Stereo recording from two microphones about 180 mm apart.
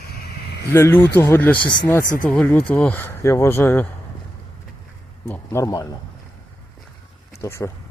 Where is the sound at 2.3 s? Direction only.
10° left (ahead or behind).